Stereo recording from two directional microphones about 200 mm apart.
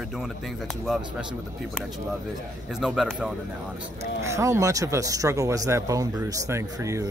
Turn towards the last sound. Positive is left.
turn(degrees=-15)  # may be behind; listen again after turning